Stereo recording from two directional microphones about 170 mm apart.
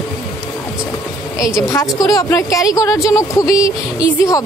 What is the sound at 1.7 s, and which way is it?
Speech, 20° left (ahead or behind).